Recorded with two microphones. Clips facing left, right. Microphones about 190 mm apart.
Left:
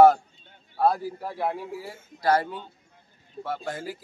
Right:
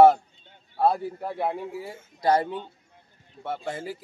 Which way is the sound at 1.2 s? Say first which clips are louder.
Right 1 dB; 20° right (ahead or behind).